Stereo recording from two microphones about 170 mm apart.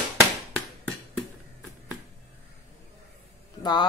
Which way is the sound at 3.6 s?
25° left (ahead or behind).